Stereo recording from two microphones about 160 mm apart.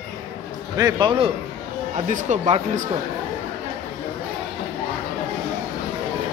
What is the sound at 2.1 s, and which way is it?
Speech, 45° right (ahead or behind).